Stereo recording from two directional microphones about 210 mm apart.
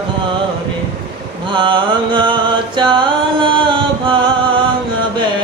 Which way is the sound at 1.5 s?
20° right (ahead or behind).